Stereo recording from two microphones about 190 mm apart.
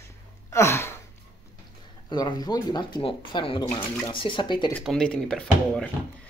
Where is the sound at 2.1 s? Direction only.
20° left (ahead or behind).